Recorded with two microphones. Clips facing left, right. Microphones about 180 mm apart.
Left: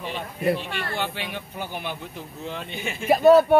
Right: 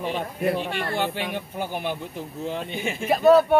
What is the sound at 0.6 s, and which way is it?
Speech, 45° right (ahead or behind).